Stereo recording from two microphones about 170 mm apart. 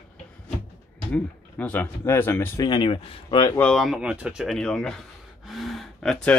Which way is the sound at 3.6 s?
Centre (ahead or behind).